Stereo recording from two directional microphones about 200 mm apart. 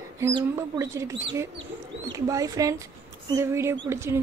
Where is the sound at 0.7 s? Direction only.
15° right (ahead or behind).